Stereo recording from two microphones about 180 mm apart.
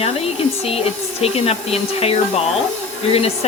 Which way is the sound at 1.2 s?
35° left (ahead or behind).